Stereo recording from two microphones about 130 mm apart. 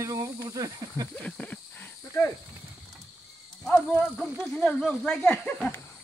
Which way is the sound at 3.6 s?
15° left (ahead or behind).